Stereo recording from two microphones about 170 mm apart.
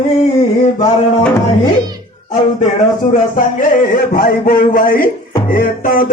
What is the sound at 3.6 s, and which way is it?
Music, 50° left (ahead or behind).